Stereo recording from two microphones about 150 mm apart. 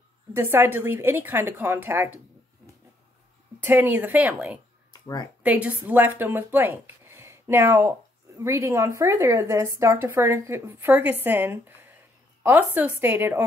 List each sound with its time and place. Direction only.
0.3 s a woman's voice: 15° right (ahead or behind)
3.6 s a woman's voice: 15° right (ahead or behind)
4.9 s speech: 25° left (ahead or behind)
5.4 s a woman's voice: 10° right (ahead or behind)